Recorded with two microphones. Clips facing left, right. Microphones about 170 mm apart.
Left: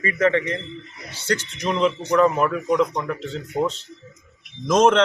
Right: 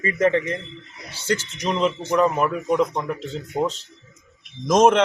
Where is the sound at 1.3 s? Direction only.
10° right (ahead or behind).